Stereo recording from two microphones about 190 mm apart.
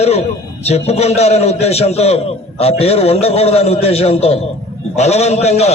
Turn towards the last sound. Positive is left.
turn(degrees=35)  # may be behind; listen again after turning